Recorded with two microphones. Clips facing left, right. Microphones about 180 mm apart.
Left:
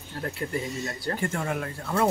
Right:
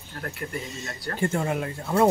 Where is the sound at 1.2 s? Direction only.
25° right (ahead or behind).